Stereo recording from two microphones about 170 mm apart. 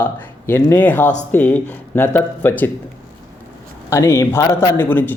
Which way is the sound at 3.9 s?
15° left (ahead or behind).